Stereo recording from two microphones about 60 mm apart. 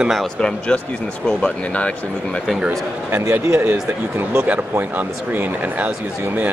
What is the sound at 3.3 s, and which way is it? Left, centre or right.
Speech, right.